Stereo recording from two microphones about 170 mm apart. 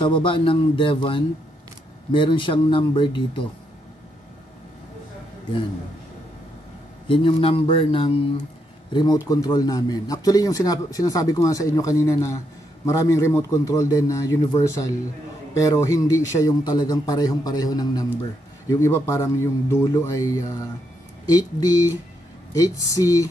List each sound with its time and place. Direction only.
0.0 s a man's voice: 30° left (ahead or behind)
7.1 s a man's voice: 30° left (ahead or behind)